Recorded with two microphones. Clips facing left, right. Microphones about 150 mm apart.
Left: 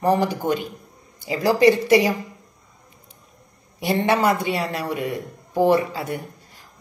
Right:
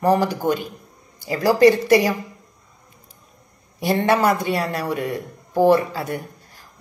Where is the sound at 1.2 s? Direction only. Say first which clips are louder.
Right 2 dB; 20° left (ahead or behind).